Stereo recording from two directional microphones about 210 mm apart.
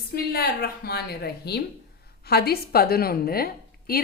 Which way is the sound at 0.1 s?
50° left (ahead or behind).